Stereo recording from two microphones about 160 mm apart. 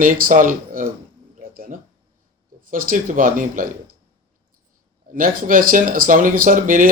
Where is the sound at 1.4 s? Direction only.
60° right (ahead or behind).